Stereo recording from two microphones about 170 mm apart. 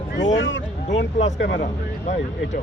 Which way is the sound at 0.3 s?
90° left.